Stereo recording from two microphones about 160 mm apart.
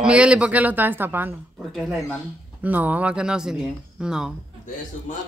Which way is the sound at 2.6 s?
10° right (ahead or behind).